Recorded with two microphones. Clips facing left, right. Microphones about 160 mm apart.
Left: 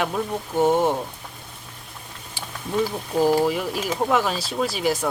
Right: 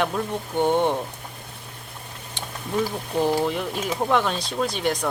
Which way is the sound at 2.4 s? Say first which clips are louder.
Right 1 dB; 5° left (ahead or behind).